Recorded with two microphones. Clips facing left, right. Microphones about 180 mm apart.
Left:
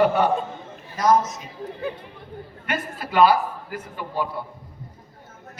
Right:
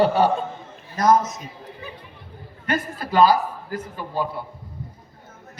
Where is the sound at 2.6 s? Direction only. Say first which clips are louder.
Right 4 dB; 40° right (ahead or behind).